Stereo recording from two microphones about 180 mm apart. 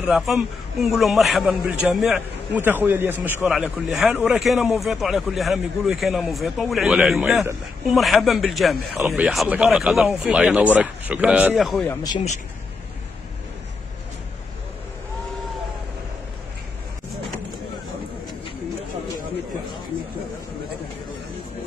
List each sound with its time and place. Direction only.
0.0 s speech: 5° right (ahead or behind)
7.9 s speech: centre (ahead or behind)
8.9 s speech: 10° right (ahead or behind)
11.9 s speech: 20° left (ahead or behind)